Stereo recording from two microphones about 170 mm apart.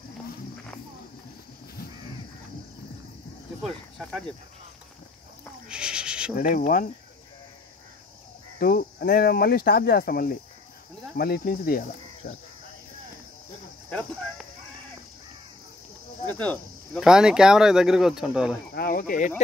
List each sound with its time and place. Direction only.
3.6 s speech: centre (ahead or behind)
5.7 s owl: 5° right (ahead or behind)
6.3 s speech: 60° left (ahead or behind)
8.5 s speech: 60° left (ahead or behind)
13.8 s speech: 5° left (ahead or behind)
16.3 s speech: 10° left (ahead or behind)
17.0 s speech: 5° right (ahead or behind)
18.7 s speech: 65° left (ahead or behind); by 19.4 s 45° left (ahead or behind)